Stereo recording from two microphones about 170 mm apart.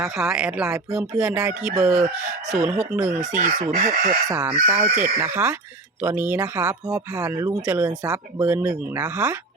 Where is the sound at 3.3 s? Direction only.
45° right (ahead or behind).